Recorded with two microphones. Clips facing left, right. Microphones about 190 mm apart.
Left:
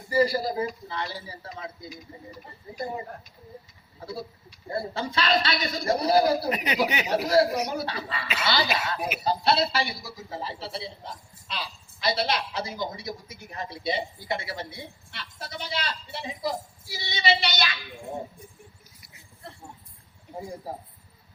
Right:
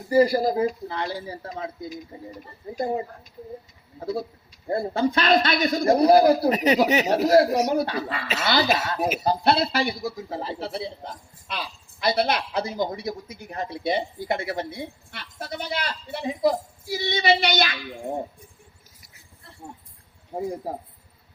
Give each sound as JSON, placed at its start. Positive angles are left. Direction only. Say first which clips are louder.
{"t": 0.1, "sound": "a woman's voice", "louder": "right 5 dB", "side_deg": -50}
{"t": 2.7, "sound": "a woman's voice", "louder": "right 7 dB", "side_deg": -50}
{"t": 4.7, "sound": "a woman's voice", "louder": "right 7 dB", "side_deg": -50}
{"t": 6.5, "sound": "a woman's voice", "louder": "right 7 dB", "side_deg": -40}